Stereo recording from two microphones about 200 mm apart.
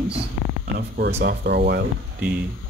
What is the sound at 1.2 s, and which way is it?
Speech, 55° right (ahead or behind).